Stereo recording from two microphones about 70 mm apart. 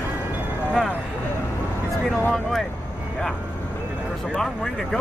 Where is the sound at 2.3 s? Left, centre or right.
Centre.